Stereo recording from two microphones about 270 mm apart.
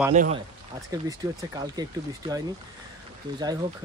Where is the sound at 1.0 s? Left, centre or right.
Centre.